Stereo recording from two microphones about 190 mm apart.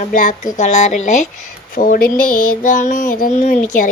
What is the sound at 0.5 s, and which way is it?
Speech, 40° left (ahead or behind).